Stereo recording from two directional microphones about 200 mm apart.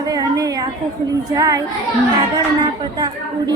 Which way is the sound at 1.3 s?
15° right (ahead or behind).